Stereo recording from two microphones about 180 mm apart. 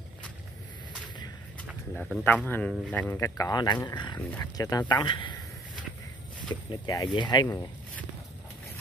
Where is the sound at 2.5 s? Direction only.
10° left (ahead or behind); by 5.3 s 25° left (ahead or behind).